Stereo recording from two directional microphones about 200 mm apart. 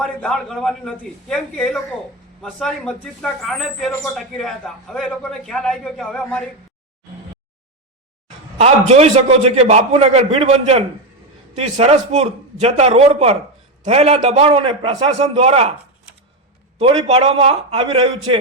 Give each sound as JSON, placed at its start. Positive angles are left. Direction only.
{"t": 0.0, "sound": "speech", "side_deg": 0}
{"t": 8.5, "sound": "a man's voice", "side_deg": -30}
{"t": 17.1, "sound": "a man's voice", "side_deg": -30}